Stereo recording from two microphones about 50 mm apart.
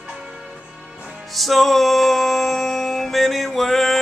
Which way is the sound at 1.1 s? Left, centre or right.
Centre.